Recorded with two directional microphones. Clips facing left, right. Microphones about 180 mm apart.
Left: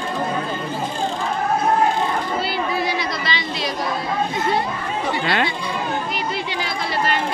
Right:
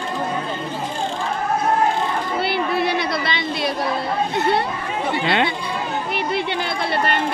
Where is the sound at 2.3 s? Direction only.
60° right (ahead or behind).